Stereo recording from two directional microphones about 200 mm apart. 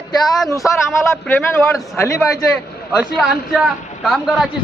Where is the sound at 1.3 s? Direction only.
15° left (ahead or behind).